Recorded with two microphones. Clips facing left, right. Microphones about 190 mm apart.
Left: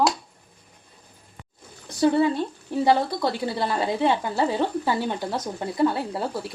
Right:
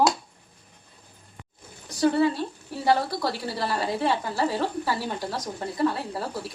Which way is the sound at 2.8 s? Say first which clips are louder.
Left 3 dB; 25° left (ahead or behind).